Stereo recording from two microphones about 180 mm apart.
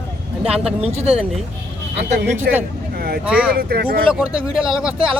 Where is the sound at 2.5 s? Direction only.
60° right (ahead or behind).